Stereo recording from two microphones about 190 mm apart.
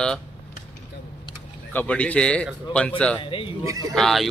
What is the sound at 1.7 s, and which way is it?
Speech, 5° left (ahead or behind).